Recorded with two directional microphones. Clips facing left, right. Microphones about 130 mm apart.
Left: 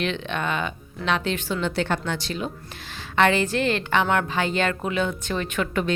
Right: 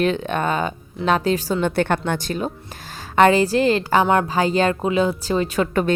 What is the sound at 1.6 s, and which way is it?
A woman's voice, 55° right (ahead or behind).